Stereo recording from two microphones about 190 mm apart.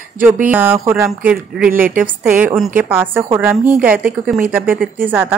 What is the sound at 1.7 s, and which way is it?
Speech, 50° right (ahead or behind).